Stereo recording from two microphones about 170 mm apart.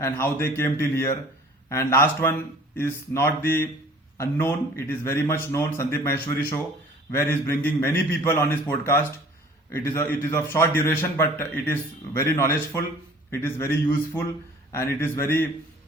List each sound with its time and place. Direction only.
0.0 s a man's voice: 15° left (ahead or behind)